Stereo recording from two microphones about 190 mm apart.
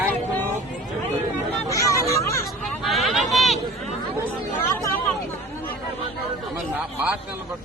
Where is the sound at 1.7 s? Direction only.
15° left (ahead or behind).